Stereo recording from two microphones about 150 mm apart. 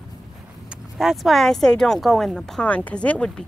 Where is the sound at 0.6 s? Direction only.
Centre (ahead or behind).